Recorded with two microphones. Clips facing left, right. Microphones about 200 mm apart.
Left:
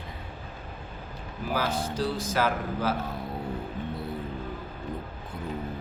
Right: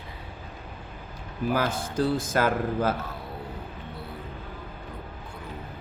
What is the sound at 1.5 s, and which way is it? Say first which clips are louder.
Speech: right 1 dB; 55° right (ahead or behind).